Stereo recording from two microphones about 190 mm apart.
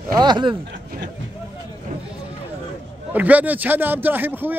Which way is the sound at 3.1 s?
10° right (ahead or behind).